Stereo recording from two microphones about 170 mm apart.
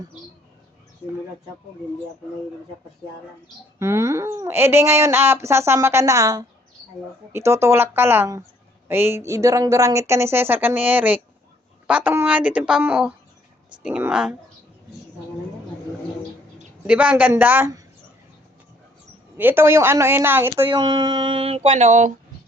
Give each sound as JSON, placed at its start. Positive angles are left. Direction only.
{"t": 3.8, "sound": "speech", "side_deg": -15}
{"t": 16.8, "sound": "speech", "side_deg": -5}
{"t": 19.4, "sound": "speech", "side_deg": -10}
{"t": 20.8, "sound": "a sound", "side_deg": -25}